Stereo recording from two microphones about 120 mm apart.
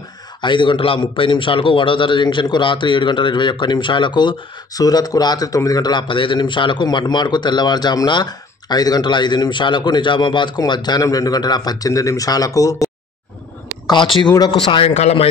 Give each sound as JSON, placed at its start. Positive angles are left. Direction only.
{"t": 0.4, "sound": "a man's voice", "side_deg": 40}
{"t": 13.8, "sound": "a man's voice", "side_deg": 40}
{"t": 15.0, "sound": "speech", "side_deg": 60}